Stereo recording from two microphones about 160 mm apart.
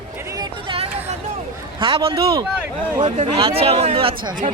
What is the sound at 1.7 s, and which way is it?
Speech, 35° right (ahead or behind).